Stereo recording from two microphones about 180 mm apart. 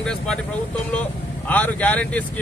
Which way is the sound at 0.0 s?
5° left (ahead or behind).